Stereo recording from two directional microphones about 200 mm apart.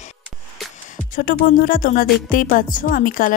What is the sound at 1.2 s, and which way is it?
A woman's voice, 45° left (ahead or behind).